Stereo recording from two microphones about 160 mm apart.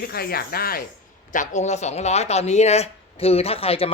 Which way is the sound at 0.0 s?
70° left (ahead or behind).